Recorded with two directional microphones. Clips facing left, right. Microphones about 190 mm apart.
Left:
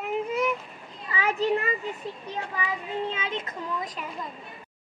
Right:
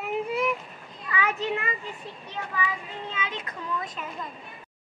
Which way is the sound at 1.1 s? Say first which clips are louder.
Left 3 dB; 30° left (ahead or behind).